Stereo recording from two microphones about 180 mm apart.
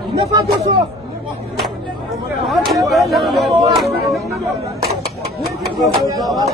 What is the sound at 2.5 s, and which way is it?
Speech, centre (ahead or behind).